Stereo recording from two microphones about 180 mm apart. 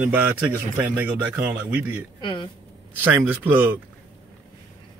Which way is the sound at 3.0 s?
10° right (ahead or behind).